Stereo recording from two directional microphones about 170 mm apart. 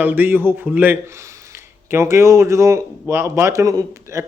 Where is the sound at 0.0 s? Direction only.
10° right (ahead or behind).